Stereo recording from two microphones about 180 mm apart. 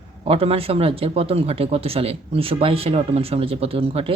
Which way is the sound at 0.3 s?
30° right (ahead or behind).